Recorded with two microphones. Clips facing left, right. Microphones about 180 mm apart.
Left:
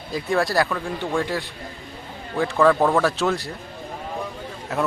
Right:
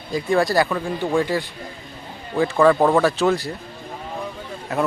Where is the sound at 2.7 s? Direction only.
15° right (ahead or behind).